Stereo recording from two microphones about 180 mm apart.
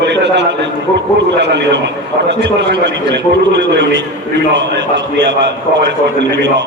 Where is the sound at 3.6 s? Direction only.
90° right.